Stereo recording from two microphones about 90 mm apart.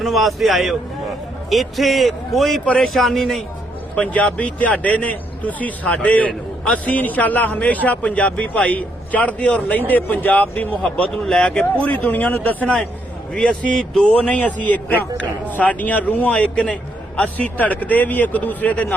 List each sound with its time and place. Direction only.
0.0 s a man's voice: centre (ahead or behind); by 18.9 s 15° left (ahead or behind)